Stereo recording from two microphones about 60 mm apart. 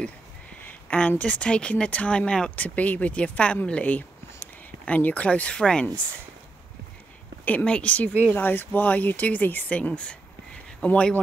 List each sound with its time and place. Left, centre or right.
0.6 s speech: left
7.4 s speech: left
8.3 s speech: left